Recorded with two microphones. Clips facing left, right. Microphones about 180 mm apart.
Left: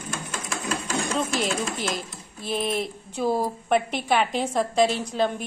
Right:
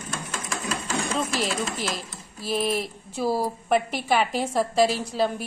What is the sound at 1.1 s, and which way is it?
Speech, centre (ahead or behind).